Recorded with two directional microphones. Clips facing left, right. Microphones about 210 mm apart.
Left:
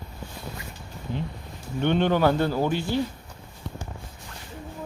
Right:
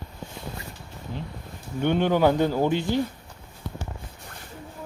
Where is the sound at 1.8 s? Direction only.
10° right (ahead or behind).